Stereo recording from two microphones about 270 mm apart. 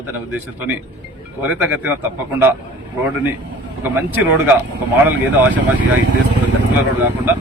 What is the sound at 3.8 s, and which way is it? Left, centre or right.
Speech, centre.